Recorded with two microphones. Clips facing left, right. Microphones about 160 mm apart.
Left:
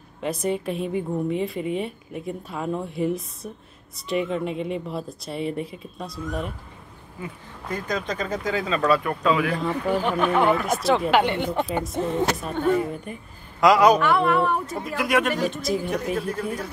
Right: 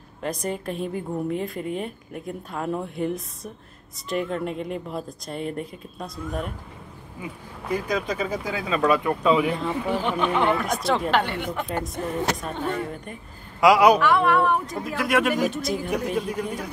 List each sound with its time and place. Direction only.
0.2 s a woman's voice: centre (ahead or behind)
7.2 s speech: 10° right (ahead or behind)
9.6 s a woman's voice: centre (ahead or behind)
11.2 s a woman's voice: 30° left (ahead or behind)
11.7 s a woman's voice: centre (ahead or behind)
13.6 s a woman's voice: 10° right (ahead or behind)
16.2 s speech: 15° right (ahead or behind)